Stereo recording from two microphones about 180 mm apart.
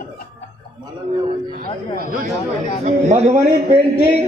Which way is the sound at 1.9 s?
50° right (ahead or behind).